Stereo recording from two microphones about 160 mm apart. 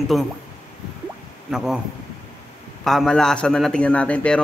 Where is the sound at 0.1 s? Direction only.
Centre (ahead or behind).